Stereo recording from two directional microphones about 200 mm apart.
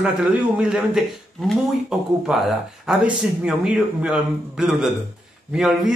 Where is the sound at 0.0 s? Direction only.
5° right (ahead or behind).